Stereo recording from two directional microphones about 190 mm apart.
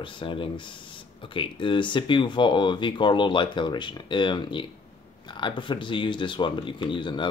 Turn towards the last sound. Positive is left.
turn(degrees=25)  # may be behind; listen again after turning